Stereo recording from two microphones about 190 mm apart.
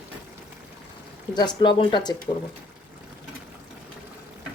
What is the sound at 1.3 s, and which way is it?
Speech, 25° left (ahead or behind).